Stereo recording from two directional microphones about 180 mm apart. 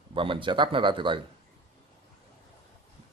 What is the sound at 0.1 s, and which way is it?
Speech, 30° right (ahead or behind).